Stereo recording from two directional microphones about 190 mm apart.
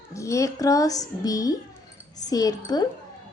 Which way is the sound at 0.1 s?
15° left (ahead or behind).